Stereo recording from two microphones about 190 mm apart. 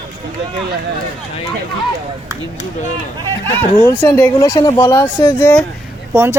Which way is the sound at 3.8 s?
10° left (ahead or behind).